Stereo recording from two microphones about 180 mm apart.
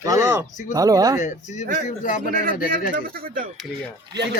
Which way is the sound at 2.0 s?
45° left (ahead or behind).